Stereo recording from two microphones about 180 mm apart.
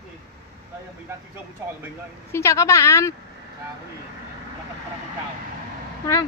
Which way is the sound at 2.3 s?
15° left (ahead or behind).